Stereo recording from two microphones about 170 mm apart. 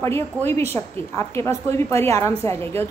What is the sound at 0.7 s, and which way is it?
A woman's voice, 15° left (ahead or behind).